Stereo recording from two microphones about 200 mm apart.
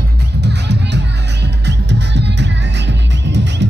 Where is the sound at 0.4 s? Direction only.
55° right (ahead or behind).